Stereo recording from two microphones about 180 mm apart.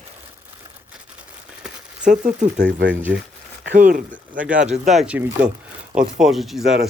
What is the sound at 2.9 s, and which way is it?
Speech, 10° right (ahead or behind).